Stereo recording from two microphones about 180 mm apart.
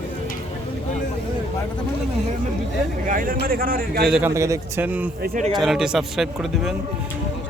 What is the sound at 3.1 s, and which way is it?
Speech, 50° right (ahead or behind).